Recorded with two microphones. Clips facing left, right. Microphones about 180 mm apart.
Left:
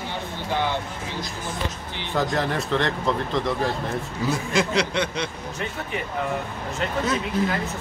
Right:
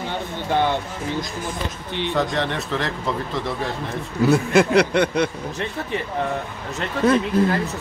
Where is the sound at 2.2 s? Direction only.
Centre (ahead or behind).